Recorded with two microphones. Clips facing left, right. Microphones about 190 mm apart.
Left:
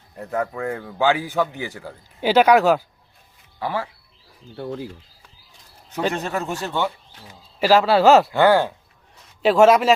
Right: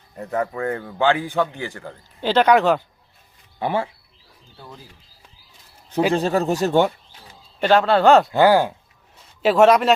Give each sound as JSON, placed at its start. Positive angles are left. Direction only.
{"t": 0.2, "sound": "a man's voice", "side_deg": 0}
{"t": 3.6, "sound": "speech", "side_deg": -25}
{"t": 4.5, "sound": "speech", "side_deg": 70}
{"t": 6.1, "sound": "speech", "side_deg": -35}
{"t": 7.6, "sound": "a man's voice", "side_deg": 5}
{"t": 8.3, "sound": "speech", "side_deg": -15}
{"t": 9.4, "sound": "a man's voice", "side_deg": 0}